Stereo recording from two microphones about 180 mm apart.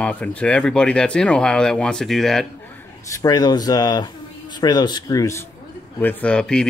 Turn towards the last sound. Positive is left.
turn(degrees=5)  # may be behind; listen again after turning